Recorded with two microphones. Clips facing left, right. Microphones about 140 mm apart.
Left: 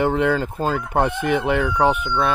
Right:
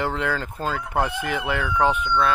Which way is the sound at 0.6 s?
15° left (ahead or behind).